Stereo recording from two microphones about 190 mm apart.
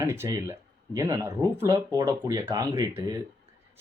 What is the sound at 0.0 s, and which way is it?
Speech, 15° right (ahead or behind).